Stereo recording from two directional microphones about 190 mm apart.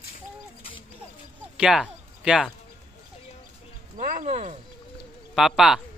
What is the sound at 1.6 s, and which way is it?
Speech, 5° right (ahead or behind).